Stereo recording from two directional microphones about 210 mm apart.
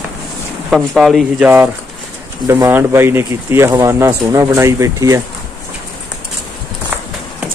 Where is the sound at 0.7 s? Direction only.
Centre (ahead or behind).